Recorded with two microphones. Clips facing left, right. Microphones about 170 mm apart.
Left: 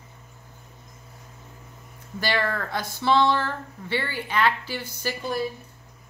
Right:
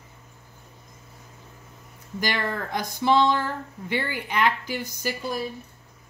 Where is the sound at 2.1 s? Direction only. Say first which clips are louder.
Left 2 dB; 15° right (ahead or behind).